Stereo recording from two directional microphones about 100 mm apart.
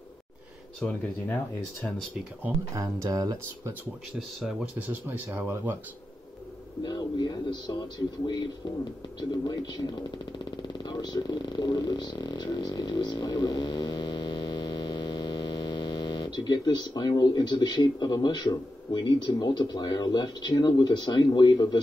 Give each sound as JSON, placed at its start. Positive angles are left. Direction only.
{"t": 0.7, "sound": "speech", "side_deg": 15}
{"t": 2.7, "sound": "speech", "side_deg": -35}
{"t": 4.7, "sound": "speech", "side_deg": -20}
{"t": 6.8, "sound": "speech", "side_deg": 45}
{"t": 9.3, "sound": "speech", "side_deg": 40}